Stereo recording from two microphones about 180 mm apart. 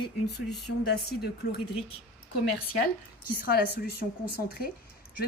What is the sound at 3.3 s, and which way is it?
Speech, 55° left (ahead or behind).